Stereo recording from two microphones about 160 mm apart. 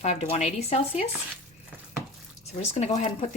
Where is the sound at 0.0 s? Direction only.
45° left (ahead or behind).